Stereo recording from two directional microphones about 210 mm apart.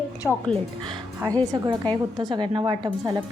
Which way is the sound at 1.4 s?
20° right (ahead or behind).